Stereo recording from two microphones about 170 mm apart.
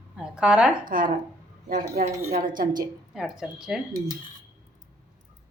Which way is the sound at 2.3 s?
50° right (ahead or behind).